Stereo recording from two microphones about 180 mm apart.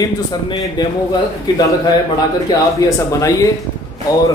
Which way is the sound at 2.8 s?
20° left (ahead or behind).